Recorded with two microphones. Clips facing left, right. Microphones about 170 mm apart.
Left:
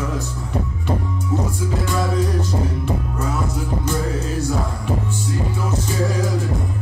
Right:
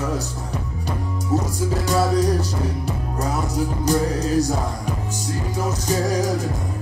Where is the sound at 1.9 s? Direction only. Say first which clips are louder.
Right 4 dB; 40° right (ahead or behind).